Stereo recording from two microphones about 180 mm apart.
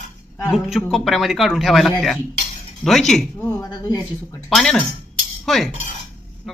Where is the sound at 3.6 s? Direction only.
20° left (ahead or behind).